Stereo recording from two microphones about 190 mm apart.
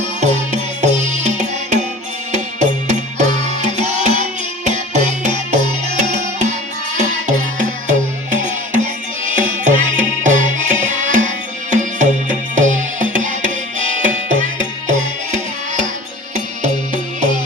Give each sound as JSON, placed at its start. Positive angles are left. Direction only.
{"t": 0.2, "sound": "music", "side_deg": -40}